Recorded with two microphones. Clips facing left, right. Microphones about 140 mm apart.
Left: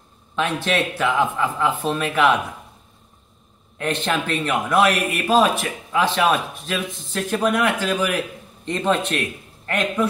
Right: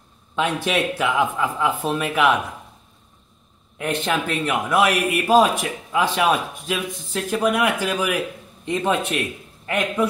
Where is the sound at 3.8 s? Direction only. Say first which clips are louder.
Even; 10° right (ahead or behind).